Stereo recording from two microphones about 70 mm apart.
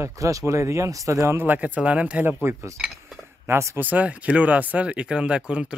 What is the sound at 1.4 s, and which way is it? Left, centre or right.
Speech, right.